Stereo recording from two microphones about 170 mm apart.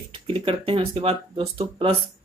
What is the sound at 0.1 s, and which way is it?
Speech, 35° right (ahead or behind).